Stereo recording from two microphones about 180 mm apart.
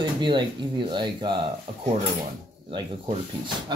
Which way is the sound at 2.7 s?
30° right (ahead or behind).